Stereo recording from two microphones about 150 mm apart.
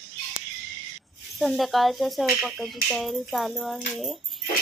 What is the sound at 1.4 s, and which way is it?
Music, centre (ahead or behind).